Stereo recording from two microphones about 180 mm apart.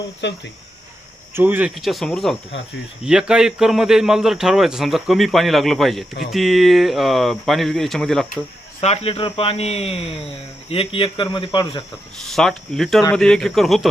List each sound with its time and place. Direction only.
0.2 s speech: 75° left (ahead or behind)
1.3 s a man's voice: 10° right (ahead or behind)
8.8 s speech: 35° left (ahead or behind)
12.3 s a man's voice: centre (ahead or behind)